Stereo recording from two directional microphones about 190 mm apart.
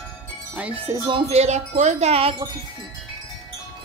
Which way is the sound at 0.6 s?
5° right (ahead or behind).